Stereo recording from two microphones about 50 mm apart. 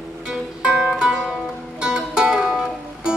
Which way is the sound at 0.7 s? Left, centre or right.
Centre.